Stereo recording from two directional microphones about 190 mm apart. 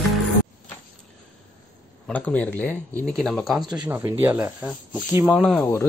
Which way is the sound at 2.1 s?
10° left (ahead or behind).